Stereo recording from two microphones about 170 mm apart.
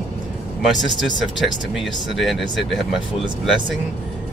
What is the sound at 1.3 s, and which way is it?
Speech, centre (ahead or behind).